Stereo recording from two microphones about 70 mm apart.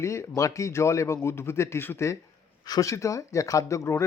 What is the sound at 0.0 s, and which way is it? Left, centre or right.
Speech, left.